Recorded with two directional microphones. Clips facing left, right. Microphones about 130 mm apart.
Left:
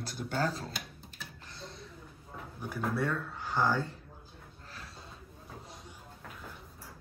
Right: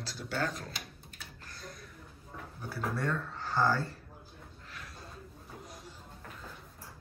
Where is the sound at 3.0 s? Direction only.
10° left (ahead or behind).